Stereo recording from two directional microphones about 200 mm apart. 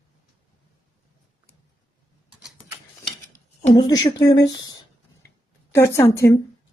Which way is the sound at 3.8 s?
20° left (ahead or behind).